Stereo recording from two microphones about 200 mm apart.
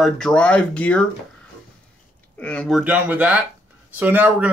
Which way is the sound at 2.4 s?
5° left (ahead or behind).